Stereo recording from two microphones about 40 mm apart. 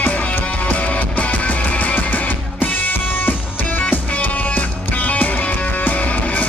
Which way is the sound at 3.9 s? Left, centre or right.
Left.